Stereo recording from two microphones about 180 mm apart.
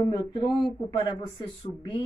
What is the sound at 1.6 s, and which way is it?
Speech, 25° left (ahead or behind).